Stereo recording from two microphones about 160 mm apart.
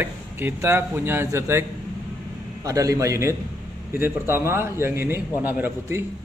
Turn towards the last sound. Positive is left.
turn(degrees=-15)  # may be behind; listen again after turning